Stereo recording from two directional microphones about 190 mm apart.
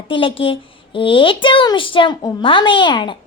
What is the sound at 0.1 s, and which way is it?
Speech, 30° left (ahead or behind).